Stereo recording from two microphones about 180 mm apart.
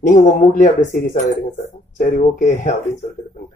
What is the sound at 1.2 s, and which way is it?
Speech, 40° left (ahead or behind).